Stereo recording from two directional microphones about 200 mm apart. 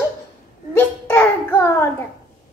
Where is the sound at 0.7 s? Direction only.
10° left (ahead or behind).